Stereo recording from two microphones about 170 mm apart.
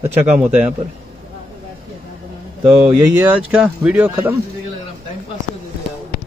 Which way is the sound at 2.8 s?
10° right (ahead or behind).